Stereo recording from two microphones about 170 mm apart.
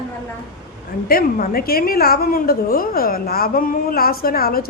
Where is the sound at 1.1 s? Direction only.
60° left (ahead or behind).